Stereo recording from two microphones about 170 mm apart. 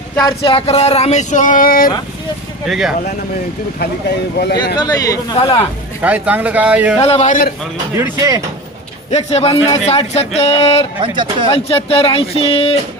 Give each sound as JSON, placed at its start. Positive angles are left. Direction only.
{"t": 0.2, "sound": "speech", "side_deg": 25}
{"t": 2.6, "sound": "speech", "side_deg": 0}
{"t": 4.4, "sound": "speech", "side_deg": 80}
{"t": 4.8, "sound": "speech", "side_deg": 20}
{"t": 5.4, "sound": "speech", "side_deg": 30}
{"t": 6.0, "sound": "speech", "side_deg": -10}
{"t": 7.0, "sound": "a man's voice", "side_deg": 40}
{"t": 7.9, "sound": "speech", "side_deg": -20}
{"t": 9.1, "sound": "speech", "side_deg": 35}
{"t": 11.0, "sound": "speech", "side_deg": -30}
{"t": 11.5, "sound": "speech", "side_deg": 35}